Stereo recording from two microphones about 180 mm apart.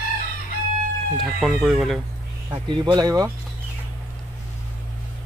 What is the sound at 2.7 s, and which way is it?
Speech, 25° right (ahead or behind).